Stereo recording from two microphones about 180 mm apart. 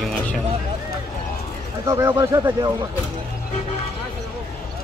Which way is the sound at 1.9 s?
20° right (ahead or behind).